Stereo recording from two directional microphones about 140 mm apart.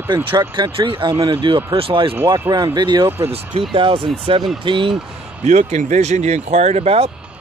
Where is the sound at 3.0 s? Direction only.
15° right (ahead or behind).